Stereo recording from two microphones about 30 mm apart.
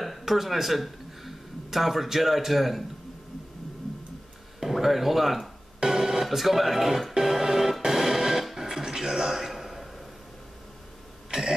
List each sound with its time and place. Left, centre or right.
0.2 s speech: centre
4.6 s speech: centre
5.9 s music: centre
6.2 s speech: centre
7.2 s music: centre
8.5 s a sound: centre
11.2 s cough: centre